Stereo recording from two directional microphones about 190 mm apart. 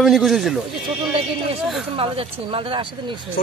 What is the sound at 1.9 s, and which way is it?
Speech, 30° right (ahead or behind).